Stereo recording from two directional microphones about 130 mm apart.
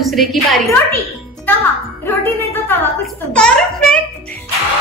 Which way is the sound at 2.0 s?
20° left (ahead or behind).